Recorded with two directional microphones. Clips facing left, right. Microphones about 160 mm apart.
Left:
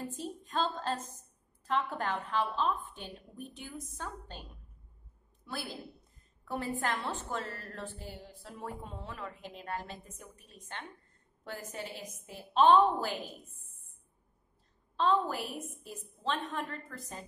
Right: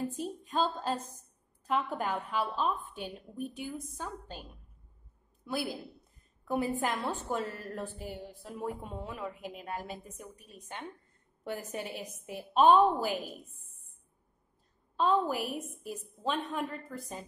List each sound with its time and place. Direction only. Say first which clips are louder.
0.2 s a woman's voice: right 1 dB; 10° right (ahead or behind)
5.5 s a woman's voice: right 6 dB; 10° right (ahead or behind)
15.0 s a woman's voice: right 1 dB; 10° right (ahead or behind)